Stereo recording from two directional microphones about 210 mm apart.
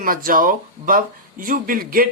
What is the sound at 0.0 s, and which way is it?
Speech, 40° right (ahead or behind).